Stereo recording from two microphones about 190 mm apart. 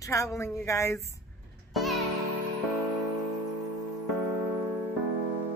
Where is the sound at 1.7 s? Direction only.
Centre (ahead or behind).